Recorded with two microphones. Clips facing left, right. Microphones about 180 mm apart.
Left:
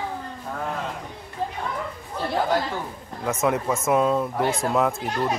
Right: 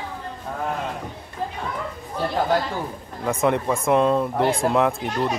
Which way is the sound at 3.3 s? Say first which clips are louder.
Right 2 dB; 5° left (ahead or behind).